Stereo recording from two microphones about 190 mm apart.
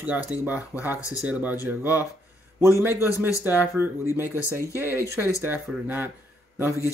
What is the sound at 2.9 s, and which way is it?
Speech, 15° left (ahead or behind).